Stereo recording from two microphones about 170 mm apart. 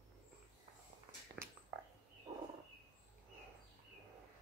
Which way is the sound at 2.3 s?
25° right (ahead or behind).